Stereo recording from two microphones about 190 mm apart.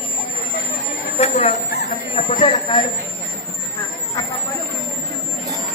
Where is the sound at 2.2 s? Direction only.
35° left (ahead or behind).